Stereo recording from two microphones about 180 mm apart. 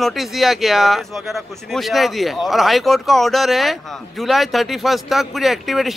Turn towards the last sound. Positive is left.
turn(degrees=0)  # may be behind; listen again after turning